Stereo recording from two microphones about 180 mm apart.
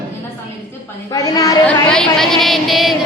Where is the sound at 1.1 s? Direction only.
20° left (ahead or behind).